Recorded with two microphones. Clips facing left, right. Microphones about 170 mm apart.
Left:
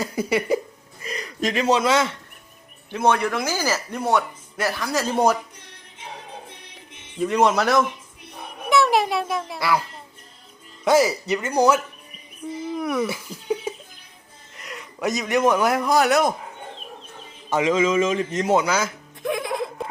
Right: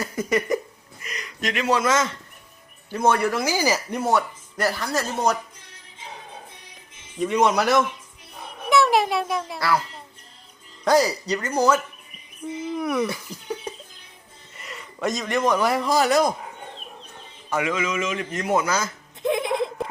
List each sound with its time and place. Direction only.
0.0 s a sound: 15° left (ahead or behind)
1.0 s speech: 30° left (ahead or behind)
2.9 s speech: 5° right (ahead or behind)
4.0 s a child's voice: centre (ahead or behind)
7.2 s speech: centre (ahead or behind)
9.6 s a child's voice: 10° left (ahead or behind)
11.0 s a man's voice: 25° left (ahead or behind)
11.5 s a child's voice: 10° left (ahead or behind)
12.7 s speech: centre (ahead or behind)
14.5 s a sound: centre (ahead or behind)
15.4 s speech: 10° left (ahead or behind)
17.5 s a man's voice: 20° left (ahead or behind)
19.2 s a sound: 20° right (ahead or behind)